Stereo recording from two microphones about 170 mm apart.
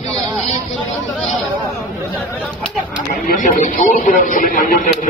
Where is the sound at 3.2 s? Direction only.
55° left (ahead or behind).